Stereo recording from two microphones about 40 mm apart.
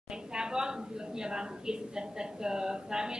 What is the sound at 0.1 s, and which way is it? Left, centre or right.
A woman's voice, centre.